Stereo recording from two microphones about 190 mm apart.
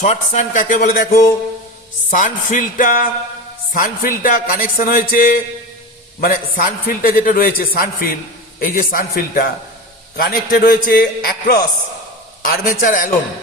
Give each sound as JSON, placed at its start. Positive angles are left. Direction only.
{"t": 0.0, "sound": "a man's voice", "side_deg": 40}